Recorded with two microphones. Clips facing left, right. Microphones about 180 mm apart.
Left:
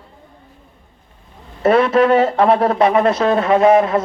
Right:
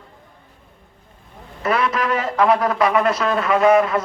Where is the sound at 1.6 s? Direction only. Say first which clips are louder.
Left 8 dB; 30° left (ahead or behind).